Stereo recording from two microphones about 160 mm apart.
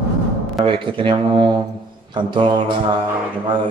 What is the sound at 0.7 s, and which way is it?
Speech, 30° right (ahead or behind).